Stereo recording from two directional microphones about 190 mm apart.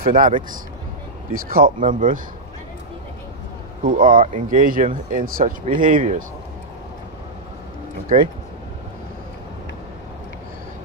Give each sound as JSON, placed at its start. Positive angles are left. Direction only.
{"t": 0.0, "sound": "speech", "side_deg": -45}
{"t": 3.8, "sound": "speech", "side_deg": -45}
{"t": 8.1, "sound": "speech", "side_deg": -40}